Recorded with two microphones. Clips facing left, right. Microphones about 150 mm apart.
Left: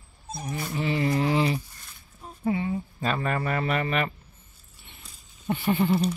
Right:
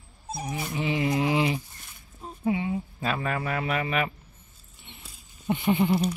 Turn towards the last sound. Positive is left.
turn(degrees=-15)  # may be behind; listen again after turning